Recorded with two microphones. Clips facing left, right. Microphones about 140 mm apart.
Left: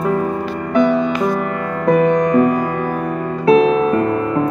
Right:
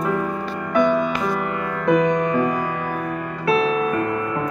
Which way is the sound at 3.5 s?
35° left (ahead or behind).